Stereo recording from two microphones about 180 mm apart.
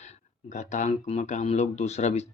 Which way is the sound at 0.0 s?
40° left (ahead or behind).